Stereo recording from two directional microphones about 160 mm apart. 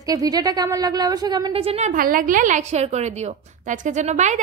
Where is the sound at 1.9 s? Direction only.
60° right (ahead or behind).